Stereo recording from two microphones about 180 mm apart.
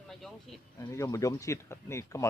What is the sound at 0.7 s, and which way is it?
Speech, 15° left (ahead or behind).